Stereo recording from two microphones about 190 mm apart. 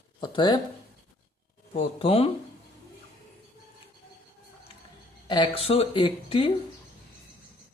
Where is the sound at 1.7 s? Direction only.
30° left (ahead or behind).